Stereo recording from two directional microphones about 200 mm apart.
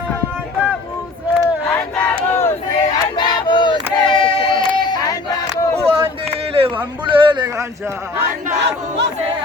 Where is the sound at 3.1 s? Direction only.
25° left (ahead or behind).